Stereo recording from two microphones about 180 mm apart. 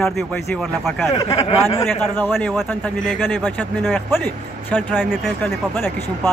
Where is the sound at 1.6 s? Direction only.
15° left (ahead or behind).